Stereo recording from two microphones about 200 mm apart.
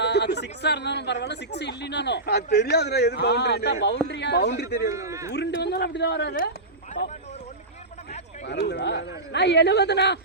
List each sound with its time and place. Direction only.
0.0 s speech: 55° left (ahead or behind)
4.9 s a man's voice: 15° right (ahead or behind)
5.3 s speech: 60° left (ahead or behind)
8.4 s speech: 55° left (ahead or behind)